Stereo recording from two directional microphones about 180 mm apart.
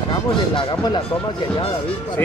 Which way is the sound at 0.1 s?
25° left (ahead or behind).